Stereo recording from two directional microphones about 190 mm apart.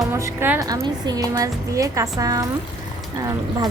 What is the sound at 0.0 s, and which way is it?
A woman's voice, 15° right (ahead or behind).